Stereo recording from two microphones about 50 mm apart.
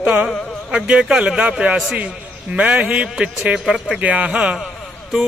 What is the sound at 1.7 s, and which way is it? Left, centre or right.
Speech, centre.